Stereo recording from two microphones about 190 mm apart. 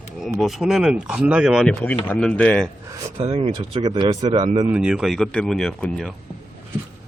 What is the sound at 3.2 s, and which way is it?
Speech, 35° right (ahead or behind).